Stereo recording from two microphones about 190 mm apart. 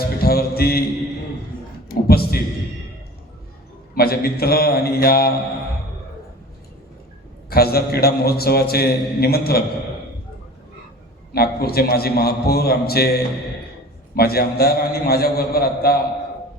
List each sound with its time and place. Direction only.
0.0 s music: 55° left (ahead or behind)
1.9 s a sound: 55° left (ahead or behind)
3.9 s a man's voice: 55° left (ahead or behind)
7.5 s a man's voice: 55° left (ahead or behind)
11.3 s a man's voice: 55° left (ahead or behind)